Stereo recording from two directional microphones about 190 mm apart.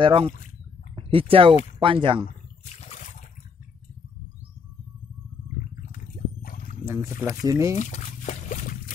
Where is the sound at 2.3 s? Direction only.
35° left (ahead or behind).